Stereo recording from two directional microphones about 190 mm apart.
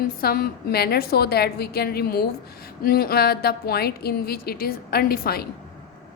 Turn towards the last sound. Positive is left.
turn(degrees=55)  # may be behind; listen again after turning